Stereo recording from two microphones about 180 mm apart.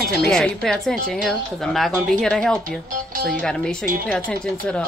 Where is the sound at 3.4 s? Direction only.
5° left (ahead or behind).